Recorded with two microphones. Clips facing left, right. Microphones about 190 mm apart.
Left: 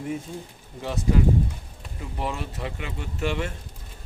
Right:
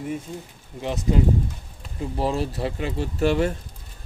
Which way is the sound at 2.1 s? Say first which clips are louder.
Right 6 dB; 35° right (ahead or behind).